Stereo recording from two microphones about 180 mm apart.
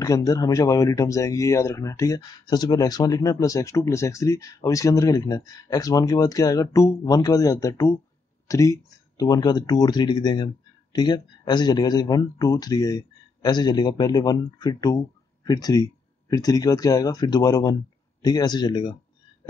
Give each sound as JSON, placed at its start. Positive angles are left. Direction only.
{"t": 0.0, "sound": "speech", "side_deg": 20}